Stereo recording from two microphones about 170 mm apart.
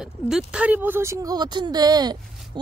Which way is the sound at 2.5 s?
25° right (ahead or behind).